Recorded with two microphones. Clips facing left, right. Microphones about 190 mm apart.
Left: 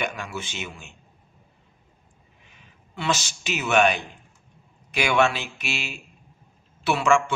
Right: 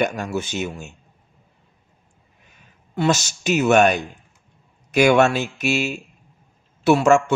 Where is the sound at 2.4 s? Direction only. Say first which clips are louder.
Right 1 dB; 45° right (ahead or behind).